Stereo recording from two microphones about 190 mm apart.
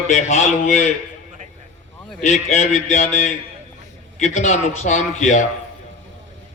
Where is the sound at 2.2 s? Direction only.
35° left (ahead or behind).